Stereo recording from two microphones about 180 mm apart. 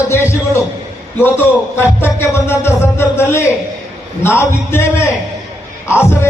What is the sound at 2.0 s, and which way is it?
A man's voice, 15° left (ahead or behind).